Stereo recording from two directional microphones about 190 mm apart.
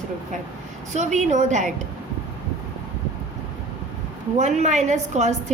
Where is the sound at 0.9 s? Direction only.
40° right (ahead or behind).